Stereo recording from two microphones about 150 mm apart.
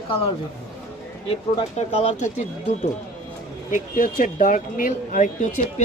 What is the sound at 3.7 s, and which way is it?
Speech, 65° left (ahead or behind).